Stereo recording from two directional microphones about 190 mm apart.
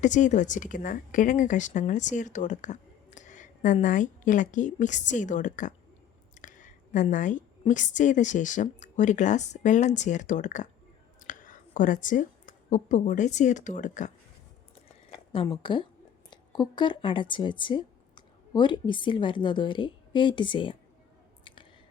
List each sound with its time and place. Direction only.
0.0 s a woman's voice: 40° left (ahead or behind)
15.6 s speech: 25° left (ahead or behind)
21.4 s a sound: 25° left (ahead or behind)